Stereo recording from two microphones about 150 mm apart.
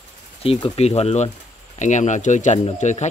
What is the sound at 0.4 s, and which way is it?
Speech, 40° left (ahead or behind).